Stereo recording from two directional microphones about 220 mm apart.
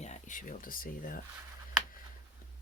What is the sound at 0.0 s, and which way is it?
Speech, 35° left (ahead or behind).